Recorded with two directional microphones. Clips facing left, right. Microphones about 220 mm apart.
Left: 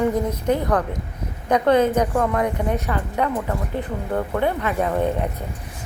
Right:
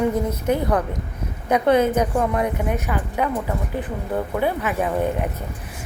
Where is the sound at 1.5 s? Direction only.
10° right (ahead or behind).